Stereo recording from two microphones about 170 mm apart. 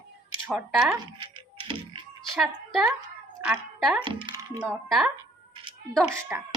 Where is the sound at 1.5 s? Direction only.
30° right (ahead or behind).